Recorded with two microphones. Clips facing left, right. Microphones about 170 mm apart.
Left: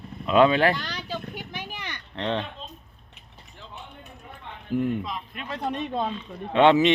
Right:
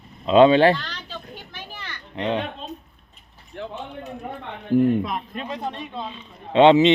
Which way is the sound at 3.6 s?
70° right (ahead or behind).